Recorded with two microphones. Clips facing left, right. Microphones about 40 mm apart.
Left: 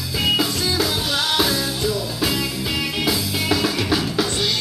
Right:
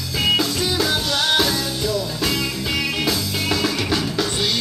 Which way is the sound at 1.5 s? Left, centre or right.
Left.